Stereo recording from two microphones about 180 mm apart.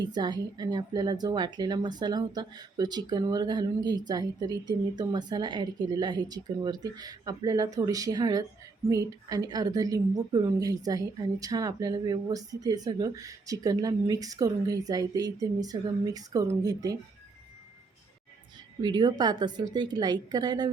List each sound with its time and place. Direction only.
0.0 s a woman's voice: 25° right (ahead or behind)
18.8 s a woman's voice: 25° right (ahead or behind)